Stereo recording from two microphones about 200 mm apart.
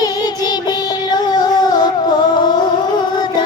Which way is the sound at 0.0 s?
20° left (ahead or behind).